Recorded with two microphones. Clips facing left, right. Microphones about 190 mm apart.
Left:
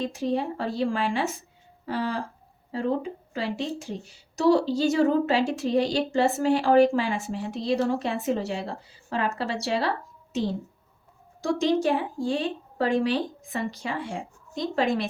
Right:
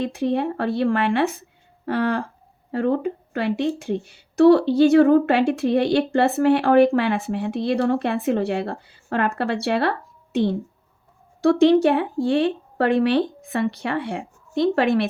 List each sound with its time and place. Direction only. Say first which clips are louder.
0.0 s a woman's voice: right 5 dB; 60° right (ahead or behind)